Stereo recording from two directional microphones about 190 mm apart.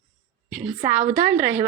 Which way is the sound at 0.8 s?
10° right (ahead or behind).